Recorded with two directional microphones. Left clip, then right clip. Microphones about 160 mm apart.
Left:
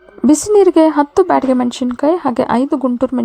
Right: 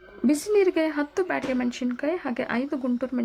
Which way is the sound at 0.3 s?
40° left (ahead or behind).